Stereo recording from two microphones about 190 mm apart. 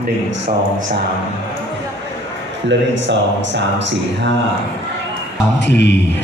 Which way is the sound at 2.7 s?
70° right (ahead or behind).